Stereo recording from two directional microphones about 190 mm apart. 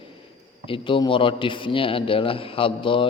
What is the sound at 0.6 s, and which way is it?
A man's voice, 30° left (ahead or behind).